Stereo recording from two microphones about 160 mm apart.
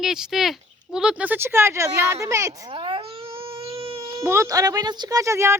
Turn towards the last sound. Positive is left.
turn(degrees=-15)  # may be behind; listen again after turning